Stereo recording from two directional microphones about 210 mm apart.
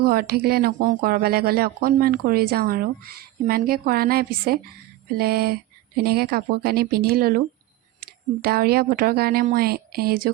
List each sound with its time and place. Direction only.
0.0 s speech: 45° right (ahead or behind)